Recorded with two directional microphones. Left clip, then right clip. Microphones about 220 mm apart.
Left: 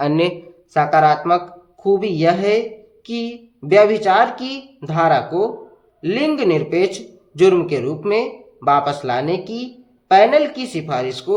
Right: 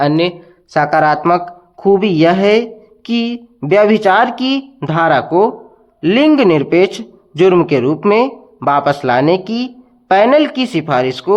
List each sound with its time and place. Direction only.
0.1 s speech: 10° right (ahead or behind)
0.7 s speech: 30° right (ahead or behind)